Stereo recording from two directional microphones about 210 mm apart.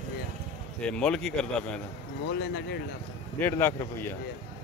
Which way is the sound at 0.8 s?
5° left (ahead or behind).